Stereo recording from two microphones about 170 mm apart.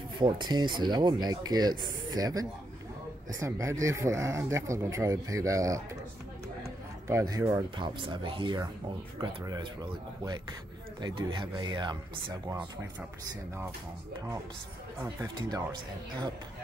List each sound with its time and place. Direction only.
0.2 s speech: 25° right (ahead or behind)
7.1 s speech: 20° right (ahead or behind)
11.0 s speech: 25° right (ahead or behind)
15.1 s speech: 25° right (ahead or behind)